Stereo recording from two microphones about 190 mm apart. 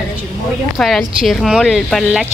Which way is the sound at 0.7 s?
Centre (ahead or behind).